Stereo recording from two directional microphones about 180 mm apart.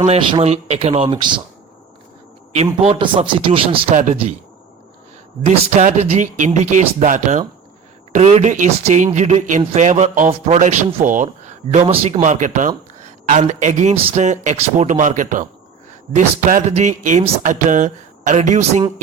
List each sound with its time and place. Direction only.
0.0 s speech: 30° right (ahead or behind)
2.8 s speech: 30° right (ahead or behind)
5.5 s speech: 40° right (ahead or behind)